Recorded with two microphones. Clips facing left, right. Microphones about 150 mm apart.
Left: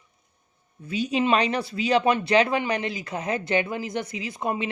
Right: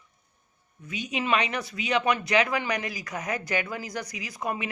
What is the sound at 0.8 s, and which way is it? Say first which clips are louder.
Speech: left 7 dB; 30° left (ahead or behind).